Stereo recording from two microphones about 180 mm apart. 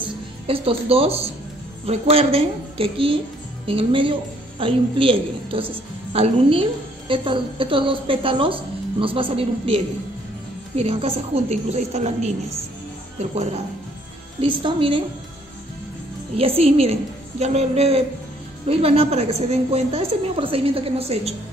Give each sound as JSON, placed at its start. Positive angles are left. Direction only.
{"t": 0.0, "sound": "a woman's voice", "side_deg": -30}
{"t": 16.3, "sound": "a woman's voice", "side_deg": -30}